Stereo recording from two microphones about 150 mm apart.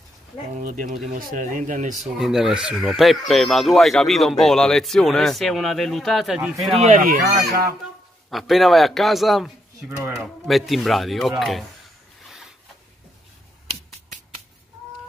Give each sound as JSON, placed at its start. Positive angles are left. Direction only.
{"t": 0.6, "sound": "speech", "side_deg": -65}
{"t": 2.0, "sound": "speech", "side_deg": 0}
{"t": 6.7, "sound": "speech", "side_deg": -55}
{"t": 8.3, "sound": "speech", "side_deg": 0}
{"t": 9.8, "sound": "speech", "side_deg": -15}
{"t": 10.2, "sound": "speech", "side_deg": 0}
{"t": 12.2, "sound": "a sound", "side_deg": 0}